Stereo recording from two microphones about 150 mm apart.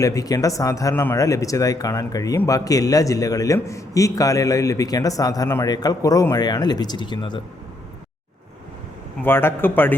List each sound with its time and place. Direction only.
0.0 s a man's voice: 25° left (ahead or behind)
9.2 s a man's voice: 15° left (ahead or behind)